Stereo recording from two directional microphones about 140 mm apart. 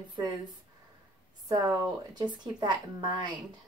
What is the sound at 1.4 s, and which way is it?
Speech, 25° right (ahead or behind).